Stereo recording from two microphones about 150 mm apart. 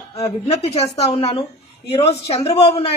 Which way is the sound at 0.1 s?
45° left (ahead or behind).